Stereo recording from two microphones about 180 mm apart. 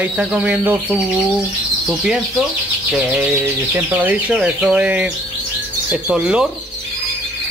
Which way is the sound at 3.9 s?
10° right (ahead or behind).